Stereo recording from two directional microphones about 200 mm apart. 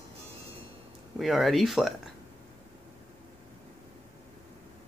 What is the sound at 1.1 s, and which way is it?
Speech, centre (ahead or behind).